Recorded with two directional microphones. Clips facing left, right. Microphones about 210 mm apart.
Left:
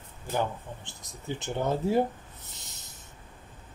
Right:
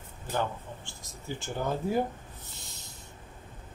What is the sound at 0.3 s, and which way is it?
Speech, 15° left (ahead or behind).